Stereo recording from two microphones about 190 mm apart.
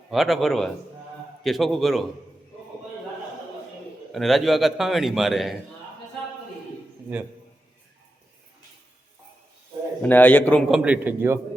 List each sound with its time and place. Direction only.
0.1 s a man's voice: centre (ahead or behind)
4.1 s a man's voice: centre (ahead or behind)
7.1 s speech: 10° right (ahead or behind)
10.0 s a man's voice: 10° left (ahead or behind)
10.7 s speech: 5° right (ahead or behind)